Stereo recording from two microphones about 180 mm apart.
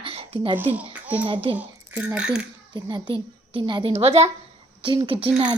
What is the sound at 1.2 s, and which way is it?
Speech, 30° right (ahead or behind).